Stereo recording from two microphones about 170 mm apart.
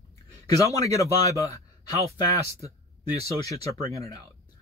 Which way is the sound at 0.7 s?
20° left (ahead or behind).